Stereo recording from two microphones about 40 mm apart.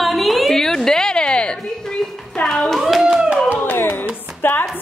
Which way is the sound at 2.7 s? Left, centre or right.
Centre.